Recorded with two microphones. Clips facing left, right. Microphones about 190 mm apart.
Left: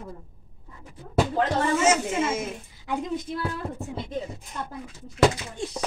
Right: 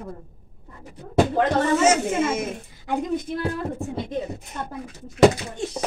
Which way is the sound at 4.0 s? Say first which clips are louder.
Right 4 dB; 65° right (ahead or behind).